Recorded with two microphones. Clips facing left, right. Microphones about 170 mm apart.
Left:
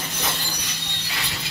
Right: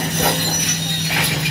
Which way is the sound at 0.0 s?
65° right (ahead or behind).